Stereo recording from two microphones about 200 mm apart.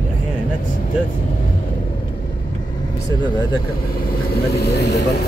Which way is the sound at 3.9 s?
50° left (ahead or behind).